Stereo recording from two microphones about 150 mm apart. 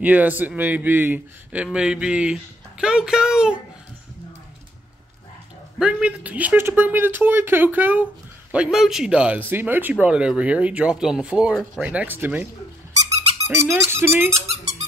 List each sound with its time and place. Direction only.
0.0 s speech: 10° right (ahead or behind)
5.8 s speech: 5° right (ahead or behind)
11.9 s speech: 10° right (ahead or behind)
13.5 s speech: 15° right (ahead or behind)
14.3 s squeak: 45° right (ahead or behind)